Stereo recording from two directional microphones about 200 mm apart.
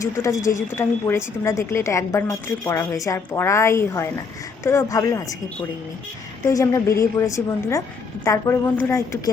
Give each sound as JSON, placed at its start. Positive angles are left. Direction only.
{"t": 0.0, "sound": "a woman's voice", "side_deg": 15}
{"t": 6.5, "sound": "a woman's voice", "side_deg": 15}